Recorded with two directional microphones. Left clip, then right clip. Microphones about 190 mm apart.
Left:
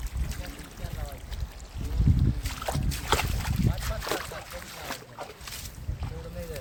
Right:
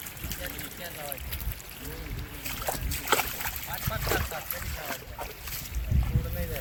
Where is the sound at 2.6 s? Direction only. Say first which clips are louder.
Right 1 dB; centre (ahead or behind).